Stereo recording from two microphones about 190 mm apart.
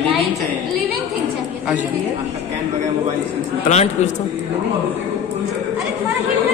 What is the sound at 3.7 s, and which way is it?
Speech, 35° left (ahead or behind).